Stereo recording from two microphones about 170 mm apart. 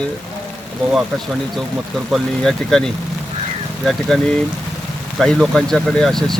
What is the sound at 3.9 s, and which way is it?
Speech, 5° left (ahead or behind).